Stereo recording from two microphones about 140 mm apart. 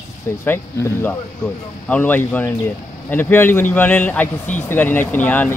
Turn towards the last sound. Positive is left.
turn(degrees=10)  # may be behind; listen again after turning